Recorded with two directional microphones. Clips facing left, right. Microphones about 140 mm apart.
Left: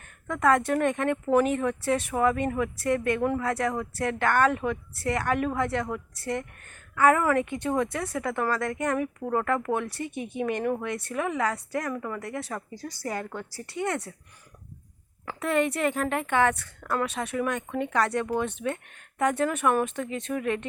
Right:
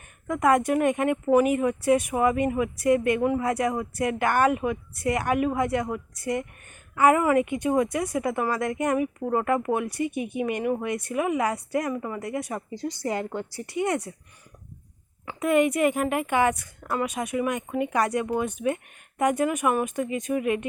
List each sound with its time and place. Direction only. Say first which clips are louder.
0.3 s speech: right 2 dB; 15° right (ahead or behind)
15.4 s speech: right 4 dB; 10° right (ahead or behind)